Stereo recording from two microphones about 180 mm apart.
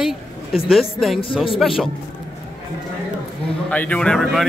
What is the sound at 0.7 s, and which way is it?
Speech, centre (ahead or behind).